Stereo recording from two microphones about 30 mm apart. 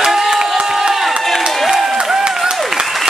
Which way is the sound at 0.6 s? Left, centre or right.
Centre.